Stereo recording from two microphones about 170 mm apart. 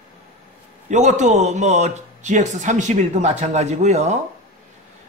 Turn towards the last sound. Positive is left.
turn(degrees=-40)  # may be behind; listen again after turning